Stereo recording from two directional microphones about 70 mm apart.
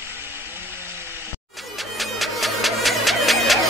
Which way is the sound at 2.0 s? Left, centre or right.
Centre.